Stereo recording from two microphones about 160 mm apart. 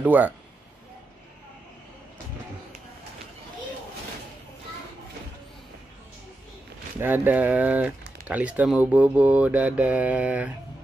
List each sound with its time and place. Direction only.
0.0 s speech: 10° right (ahead or behind)
7.0 s speech: 10° right (ahead or behind)